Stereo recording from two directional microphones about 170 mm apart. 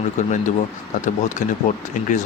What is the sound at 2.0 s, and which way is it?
Speech, 45° left (ahead or behind).